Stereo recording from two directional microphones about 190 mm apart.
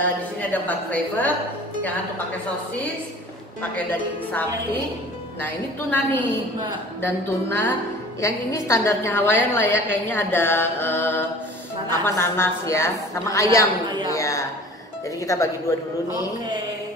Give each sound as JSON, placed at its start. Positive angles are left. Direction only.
{"t": 0.0, "sound": "a woman's voice", "side_deg": 10}
{"t": 5.4, "sound": "a woman's voice", "side_deg": 10}
{"t": 14.1, "sound": "a sound", "side_deg": 15}
{"t": 15.2, "sound": "a woman's voice", "side_deg": 15}